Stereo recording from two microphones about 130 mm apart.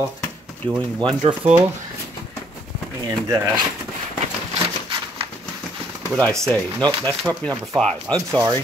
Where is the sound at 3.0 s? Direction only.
25° right (ahead or behind).